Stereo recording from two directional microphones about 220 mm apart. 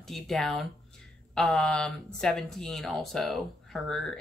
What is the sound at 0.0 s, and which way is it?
Speech, centre (ahead or behind).